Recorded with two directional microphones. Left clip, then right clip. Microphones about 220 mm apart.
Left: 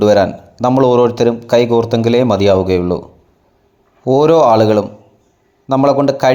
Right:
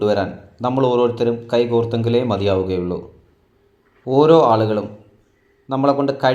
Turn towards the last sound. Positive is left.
turn(degrees=40)  # may be behind; listen again after turning